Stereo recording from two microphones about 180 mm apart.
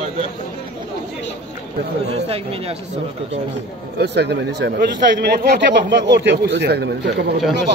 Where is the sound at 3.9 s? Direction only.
70° right (ahead or behind).